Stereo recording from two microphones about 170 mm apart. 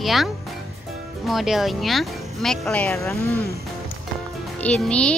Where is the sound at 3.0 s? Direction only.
15° left (ahead or behind).